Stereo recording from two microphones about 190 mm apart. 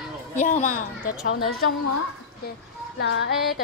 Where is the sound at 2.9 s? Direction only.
65° left (ahead or behind).